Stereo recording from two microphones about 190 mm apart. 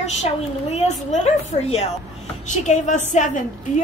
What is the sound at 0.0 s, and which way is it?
A woman's voice, 35° left (ahead or behind).